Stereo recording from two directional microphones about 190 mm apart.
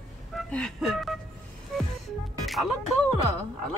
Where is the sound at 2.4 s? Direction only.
Centre (ahead or behind).